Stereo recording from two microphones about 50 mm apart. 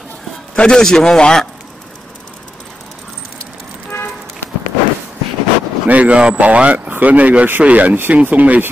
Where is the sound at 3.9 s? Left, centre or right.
Left.